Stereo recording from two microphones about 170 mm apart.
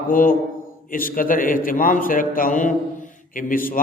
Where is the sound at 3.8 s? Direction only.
55° left (ahead or behind).